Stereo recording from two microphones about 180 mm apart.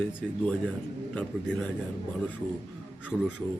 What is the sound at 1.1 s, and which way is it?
Speech, 5° left (ahead or behind).